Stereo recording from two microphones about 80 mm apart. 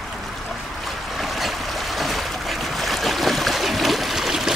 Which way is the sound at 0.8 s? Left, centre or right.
Centre.